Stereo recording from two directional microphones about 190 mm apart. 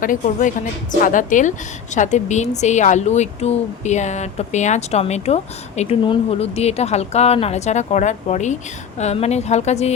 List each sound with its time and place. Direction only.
0.0 s a woman's voice: 45° left (ahead or behind)